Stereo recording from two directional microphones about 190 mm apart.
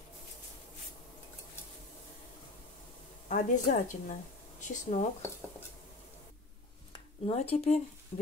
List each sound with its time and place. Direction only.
3.3 s a woman's voice: 40° left (ahead or behind)
6.9 s speech: 30° left (ahead or behind)
8.1 s a sound: 35° left (ahead or behind)